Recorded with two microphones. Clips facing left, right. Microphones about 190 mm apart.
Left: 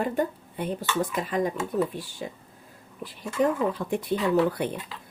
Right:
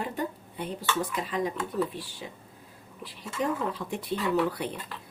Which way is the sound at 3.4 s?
50° left (ahead or behind).